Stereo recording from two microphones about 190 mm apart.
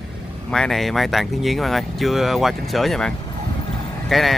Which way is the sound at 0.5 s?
Centre (ahead or behind).